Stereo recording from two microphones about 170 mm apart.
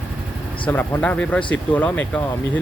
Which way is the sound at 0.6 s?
10° left (ahead or behind).